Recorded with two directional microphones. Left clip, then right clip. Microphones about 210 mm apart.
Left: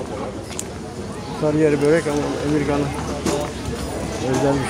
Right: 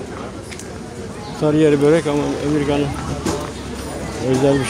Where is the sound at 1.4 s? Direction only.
50° right (ahead or behind).